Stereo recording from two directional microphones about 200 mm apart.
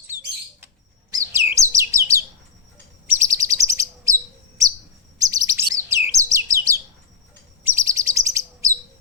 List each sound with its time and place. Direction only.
1.1 s bird: 15° right (ahead or behind)
3.1 s chirp: 15° right (ahead or behind)
5.2 s bird: 15° right (ahead or behind)
7.6 s chirp: 15° right (ahead or behind)